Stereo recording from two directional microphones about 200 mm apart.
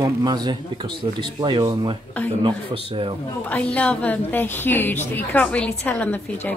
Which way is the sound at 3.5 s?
5° left (ahead or behind).